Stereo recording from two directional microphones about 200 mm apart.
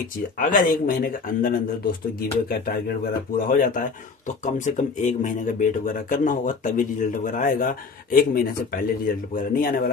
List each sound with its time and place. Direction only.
0.4 s speech: 45° left (ahead or behind)
3.4 s speech: 45° left (ahead or behind)